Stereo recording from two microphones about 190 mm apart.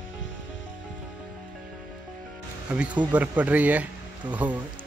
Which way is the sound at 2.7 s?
5° right (ahead or behind).